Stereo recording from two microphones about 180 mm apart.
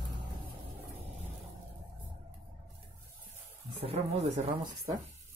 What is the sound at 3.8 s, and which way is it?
Speech, 35° right (ahead or behind).